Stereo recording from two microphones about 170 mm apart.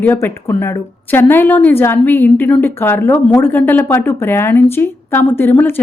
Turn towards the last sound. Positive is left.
turn(degrees=10)  # may be behind; listen again after turning